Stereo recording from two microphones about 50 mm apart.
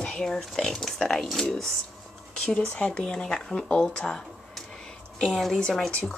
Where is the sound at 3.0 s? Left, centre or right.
Centre.